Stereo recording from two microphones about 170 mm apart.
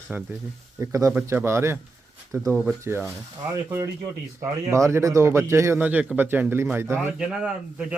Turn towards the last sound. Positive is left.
turn(degrees=-5)  # may be behind; listen again after turning